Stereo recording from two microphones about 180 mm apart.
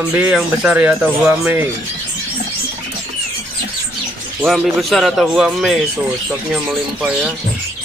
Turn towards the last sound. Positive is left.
turn(degrees=-5)  # may be behind; listen again after turning